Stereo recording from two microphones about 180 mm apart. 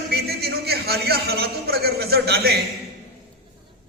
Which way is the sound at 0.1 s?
60° right (ahead or behind).